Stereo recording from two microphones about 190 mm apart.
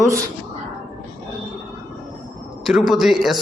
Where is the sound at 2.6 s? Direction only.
Centre (ahead or behind).